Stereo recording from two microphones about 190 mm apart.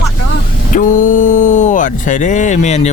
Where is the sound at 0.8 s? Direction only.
45° left (ahead or behind).